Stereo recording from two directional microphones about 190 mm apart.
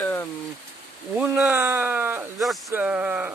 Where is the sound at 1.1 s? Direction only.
10° right (ahead or behind).